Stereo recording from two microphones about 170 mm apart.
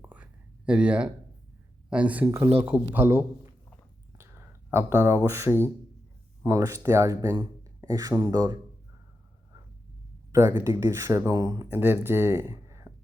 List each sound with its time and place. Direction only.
0.0 s whispering: 10° right (ahead or behind)
1.9 s speech: 10° right (ahead or behind)
10.3 s speech: 15° right (ahead or behind)